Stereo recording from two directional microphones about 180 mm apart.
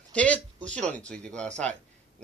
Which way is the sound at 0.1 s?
5° left (ahead or behind).